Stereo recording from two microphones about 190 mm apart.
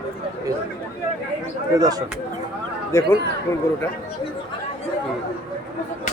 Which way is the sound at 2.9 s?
15° left (ahead or behind).